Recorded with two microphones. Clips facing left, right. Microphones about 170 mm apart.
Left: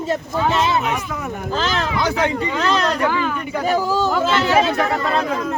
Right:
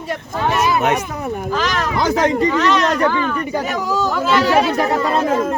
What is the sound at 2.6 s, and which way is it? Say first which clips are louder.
Speech: right 3 dB; 30° left (ahead or behind).